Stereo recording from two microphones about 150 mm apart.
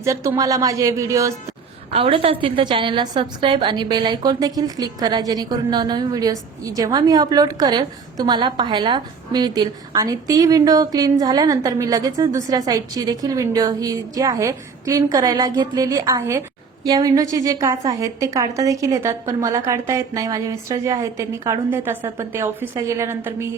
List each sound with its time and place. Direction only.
0.0 s a woman's voice: 20° right (ahead or behind)
1.9 s a woman's voice: 40° right (ahead or behind); by 23.5 s 20° right (ahead or behind)